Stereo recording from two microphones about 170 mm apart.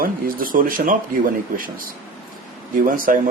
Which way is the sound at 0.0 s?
55° right (ahead or behind).